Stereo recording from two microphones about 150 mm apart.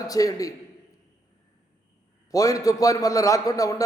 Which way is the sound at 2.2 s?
25° left (ahead or behind).